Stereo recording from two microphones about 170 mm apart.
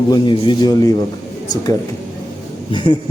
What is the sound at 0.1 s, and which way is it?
Speech, 25° left (ahead or behind).